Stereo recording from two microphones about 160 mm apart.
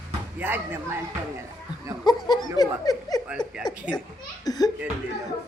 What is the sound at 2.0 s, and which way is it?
Speech, 25° left (ahead or behind).